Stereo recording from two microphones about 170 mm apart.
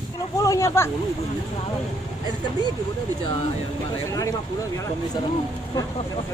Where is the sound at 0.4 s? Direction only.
20° left (ahead or behind).